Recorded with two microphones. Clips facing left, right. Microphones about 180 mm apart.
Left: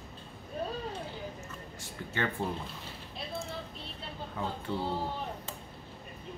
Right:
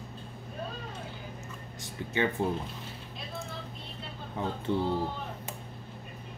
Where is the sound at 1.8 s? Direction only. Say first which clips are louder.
Right 5 dB; 15° right (ahead or behind).